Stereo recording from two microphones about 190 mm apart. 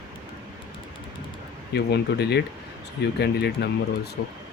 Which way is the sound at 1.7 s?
60° left (ahead or behind).